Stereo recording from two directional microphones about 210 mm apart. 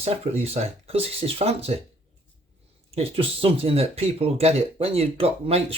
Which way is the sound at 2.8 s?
30° right (ahead or behind).